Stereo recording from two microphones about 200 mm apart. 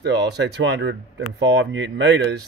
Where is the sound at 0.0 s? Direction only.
60° right (ahead or behind).